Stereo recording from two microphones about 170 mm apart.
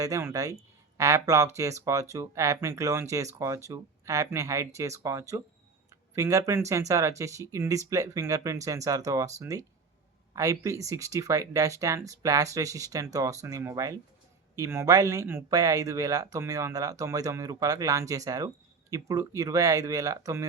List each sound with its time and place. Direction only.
0.0 s speech: 15° right (ahead or behind)